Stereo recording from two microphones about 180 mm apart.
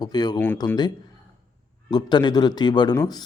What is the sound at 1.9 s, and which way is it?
Speech, 25° left (ahead or behind).